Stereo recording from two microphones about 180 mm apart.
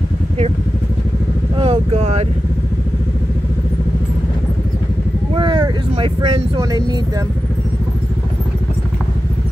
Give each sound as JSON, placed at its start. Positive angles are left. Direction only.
{"t": 1.6, "sound": "vehicle", "side_deg": -35}
{"t": 5.3, "sound": "speech", "side_deg": -25}